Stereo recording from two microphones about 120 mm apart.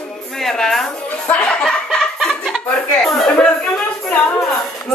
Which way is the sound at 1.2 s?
5° left (ahead or behind).